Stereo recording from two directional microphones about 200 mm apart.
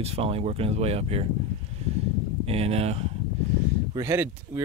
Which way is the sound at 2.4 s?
30° right (ahead or behind).